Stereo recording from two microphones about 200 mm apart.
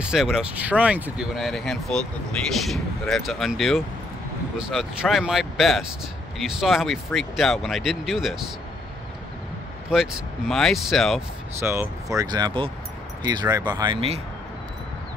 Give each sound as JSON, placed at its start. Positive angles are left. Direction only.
{"t": 0.0, "sound": "speech", "side_deg": -5}
{"t": 9.8, "sound": "speech", "side_deg": 0}
{"t": 11.6, "sound": "speech", "side_deg": -15}